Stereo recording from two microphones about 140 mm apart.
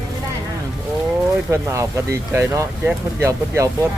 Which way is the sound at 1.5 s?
20° right (ahead or behind).